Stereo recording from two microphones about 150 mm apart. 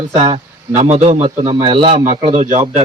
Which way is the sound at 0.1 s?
45° right (ahead or behind).